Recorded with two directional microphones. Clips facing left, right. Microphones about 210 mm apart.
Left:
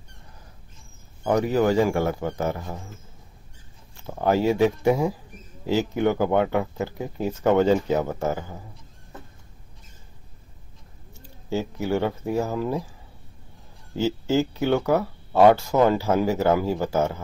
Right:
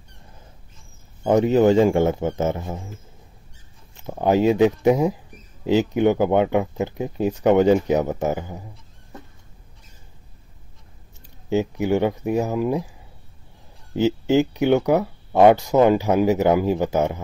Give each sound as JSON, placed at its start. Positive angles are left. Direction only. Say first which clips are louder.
{"t": 1.2, "sound": "a man's voice", "louder": "right 5 dB", "side_deg": -20}
{"t": 3.9, "sound": "a man's voice", "louder": "right 3 dB", "side_deg": -20}
{"t": 11.1, "sound": "speech", "louder": "right 6 dB", "side_deg": -20}
{"t": 13.9, "sound": "speech", "louder": "right 4 dB", "side_deg": -20}